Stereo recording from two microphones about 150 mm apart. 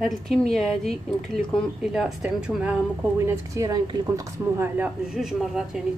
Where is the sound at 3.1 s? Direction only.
20° right (ahead or behind).